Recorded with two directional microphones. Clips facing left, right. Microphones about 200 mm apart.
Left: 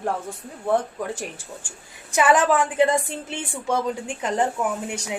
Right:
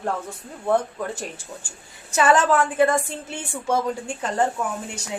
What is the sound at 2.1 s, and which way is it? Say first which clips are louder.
A woman's voice: even; 15° left (ahead or behind).